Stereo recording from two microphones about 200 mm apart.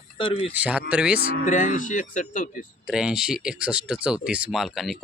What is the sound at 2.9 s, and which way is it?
Speech, 5° right (ahead or behind).